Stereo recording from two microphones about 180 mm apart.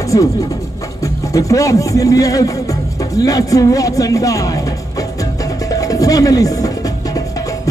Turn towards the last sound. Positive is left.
turn(degrees=20)  # may be behind; listen again after turning